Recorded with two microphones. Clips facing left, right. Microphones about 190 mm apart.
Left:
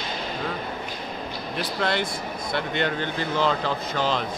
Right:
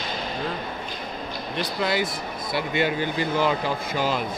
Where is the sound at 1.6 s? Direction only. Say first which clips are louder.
Right 1 dB; 5° right (ahead or behind).